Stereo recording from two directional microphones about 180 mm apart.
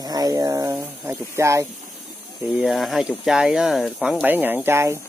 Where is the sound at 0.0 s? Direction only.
20° right (ahead or behind).